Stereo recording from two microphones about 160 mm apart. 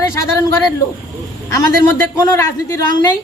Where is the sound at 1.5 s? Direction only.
20° left (ahead or behind).